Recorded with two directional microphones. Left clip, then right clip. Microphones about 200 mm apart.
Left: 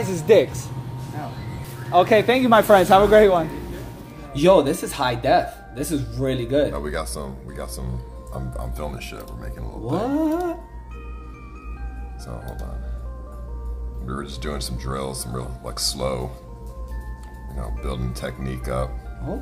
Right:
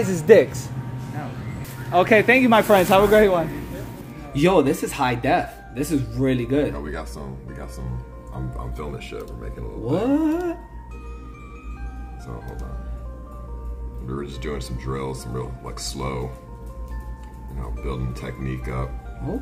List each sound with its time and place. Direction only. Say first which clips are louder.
0.0 s speech: right 2 dB; 15° right (ahead or behind)
1.9 s speech: even; 10° right (ahead or behind); by 3.4 s 10° left (ahead or behind)
4.3 s speech: left 2 dB; 10° right (ahead or behind)
6.8 s speech: left 4 dB; 30° left (ahead or behind)
8.7 s speech: right 1 dB; 30° left (ahead or behind)
9.9 s speech: right 1 dB; 10° right (ahead or behind)
14.0 s speech: even; 35° left (ahead or behind)
17.8 s speech: left 1 dB; 30° left (ahead or behind)